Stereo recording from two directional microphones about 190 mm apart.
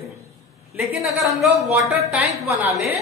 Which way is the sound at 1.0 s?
Centre (ahead or behind).